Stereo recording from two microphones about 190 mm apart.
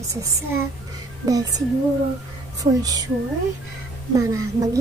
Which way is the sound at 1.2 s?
20° right (ahead or behind).